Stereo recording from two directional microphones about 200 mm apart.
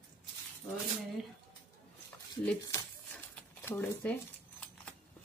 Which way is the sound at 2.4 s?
5° left (ahead or behind).